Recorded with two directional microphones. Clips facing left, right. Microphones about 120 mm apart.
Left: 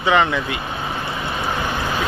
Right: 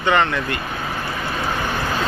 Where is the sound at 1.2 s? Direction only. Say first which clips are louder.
Even; 15° left (ahead or behind).